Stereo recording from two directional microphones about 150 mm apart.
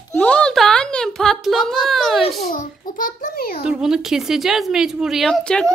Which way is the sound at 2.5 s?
65° left (ahead or behind).